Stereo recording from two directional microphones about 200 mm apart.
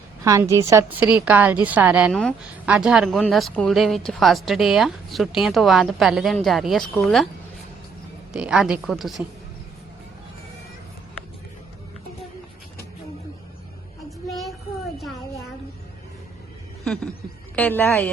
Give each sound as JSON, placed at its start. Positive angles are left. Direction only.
{"t": 0.3, "sound": "a woman's voice", "side_deg": -15}
{"t": 8.3, "sound": "speech", "side_deg": -5}
{"t": 14.3, "sound": "child singing", "side_deg": 0}
{"t": 16.8, "sound": "a sound", "side_deg": 5}